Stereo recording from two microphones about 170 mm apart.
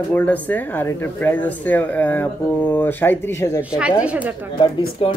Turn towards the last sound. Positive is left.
turn(degrees=30)  # may be behind; listen again after turning